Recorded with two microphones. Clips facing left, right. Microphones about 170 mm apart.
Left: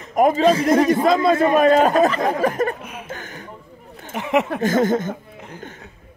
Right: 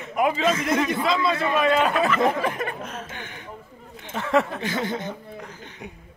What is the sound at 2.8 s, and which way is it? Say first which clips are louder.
Chuckle: right 1 dB; 10° left (ahead or behind).